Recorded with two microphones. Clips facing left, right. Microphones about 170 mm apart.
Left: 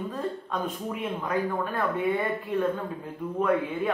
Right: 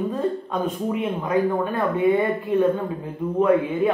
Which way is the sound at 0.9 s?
15° right (ahead or behind).